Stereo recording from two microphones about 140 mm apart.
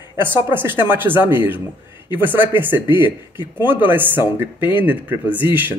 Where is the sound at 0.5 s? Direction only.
15° right (ahead or behind).